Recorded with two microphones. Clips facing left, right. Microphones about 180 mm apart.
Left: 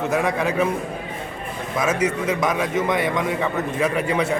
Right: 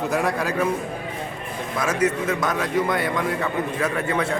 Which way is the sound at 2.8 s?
Centre (ahead or behind).